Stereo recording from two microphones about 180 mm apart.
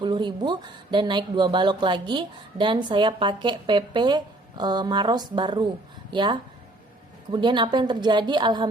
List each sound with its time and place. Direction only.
0.0 s speech: 25° right (ahead or behind)